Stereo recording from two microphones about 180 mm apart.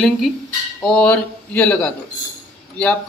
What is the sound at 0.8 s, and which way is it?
A man's voice, 5° left (ahead or behind).